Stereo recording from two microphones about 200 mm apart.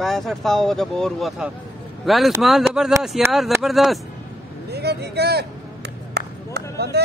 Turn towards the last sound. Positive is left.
turn(degrees=-55)  # may be behind; listen again after turning